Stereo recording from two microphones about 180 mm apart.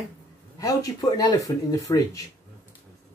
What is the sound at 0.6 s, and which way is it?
Speech, 20° left (ahead or behind).